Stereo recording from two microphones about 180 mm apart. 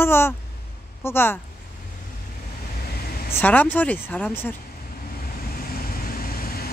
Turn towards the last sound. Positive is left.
turn(degrees=55)  # may be behind; listen again after turning